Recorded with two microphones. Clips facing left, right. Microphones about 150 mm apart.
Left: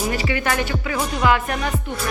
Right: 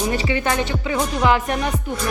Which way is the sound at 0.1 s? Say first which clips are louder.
Right 1 dB; 25° right (ahead or behind).